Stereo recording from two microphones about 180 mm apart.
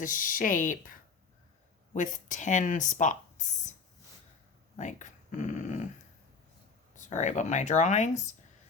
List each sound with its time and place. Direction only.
0.0 s speech: 50° left (ahead or behind)
4.8 s speech: 45° left (ahead or behind)
6.9 s speech: 45° left (ahead or behind)